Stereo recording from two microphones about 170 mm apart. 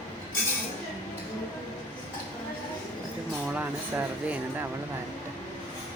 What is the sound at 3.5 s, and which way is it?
Speech, 10° right (ahead or behind).